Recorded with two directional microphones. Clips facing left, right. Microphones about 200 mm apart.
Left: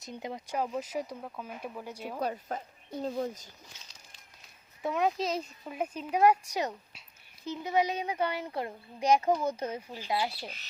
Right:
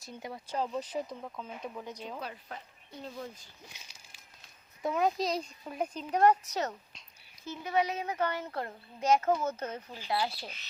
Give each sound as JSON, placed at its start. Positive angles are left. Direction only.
{"t": 0.0, "sound": "speech", "side_deg": 20}
{"t": 2.2, "sound": "speech", "side_deg": 45}
{"t": 3.7, "sound": "a sound", "side_deg": -10}
{"t": 4.8, "sound": "speech", "side_deg": 0}